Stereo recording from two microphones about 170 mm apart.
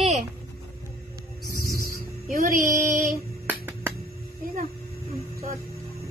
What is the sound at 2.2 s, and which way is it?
Speech, 55° right (ahead or behind).